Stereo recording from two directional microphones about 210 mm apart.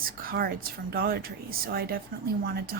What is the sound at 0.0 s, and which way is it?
A woman's voice, 45° right (ahead or behind).